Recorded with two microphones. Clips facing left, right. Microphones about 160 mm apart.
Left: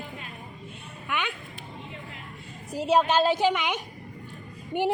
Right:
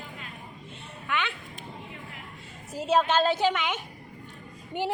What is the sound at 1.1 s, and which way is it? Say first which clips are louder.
Speech: even; 15° left (ahead or behind).